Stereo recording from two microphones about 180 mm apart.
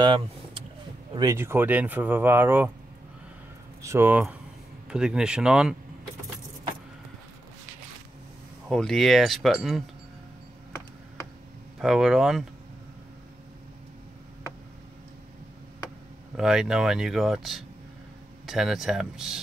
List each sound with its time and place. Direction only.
0.0 s speech: 30° right (ahead or behind)
1.1 s speech: 15° right (ahead or behind)
3.8 s speech: 15° right (ahead or behind)
8.6 s speech: centre (ahead or behind)
11.8 s speech: centre (ahead or behind)
16.3 s speech: 5° right (ahead or behind)